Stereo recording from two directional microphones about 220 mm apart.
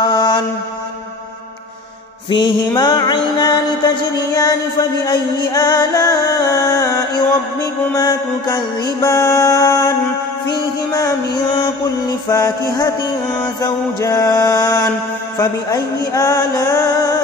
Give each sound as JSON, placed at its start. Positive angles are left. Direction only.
{"t": 0.0, "sound": "mantra", "side_deg": 20}
{"t": 2.2, "sound": "music", "side_deg": 20}
{"t": 12.3, "sound": "music", "side_deg": 20}